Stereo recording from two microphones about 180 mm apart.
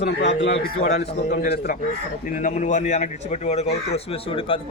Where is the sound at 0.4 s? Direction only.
70° left (ahead or behind).